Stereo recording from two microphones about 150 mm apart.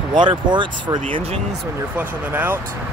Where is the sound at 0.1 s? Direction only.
30° right (ahead or behind).